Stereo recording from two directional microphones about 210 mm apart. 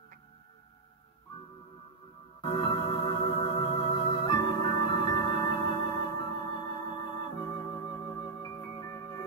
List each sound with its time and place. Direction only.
2.4 s music: 25° left (ahead or behind)